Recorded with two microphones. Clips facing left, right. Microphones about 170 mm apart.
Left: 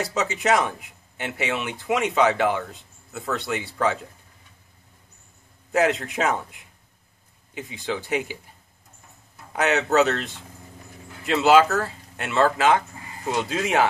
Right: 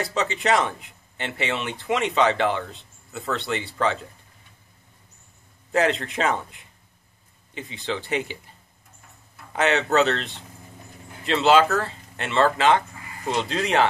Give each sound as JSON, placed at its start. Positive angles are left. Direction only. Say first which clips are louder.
{"t": 0.0, "sound": "speech", "louder": "even", "side_deg": 5}
{"t": 5.7, "sound": "speech", "louder": "left 1 dB", "side_deg": 5}
{"t": 9.5, "sound": "speech", "louder": "even", "side_deg": 5}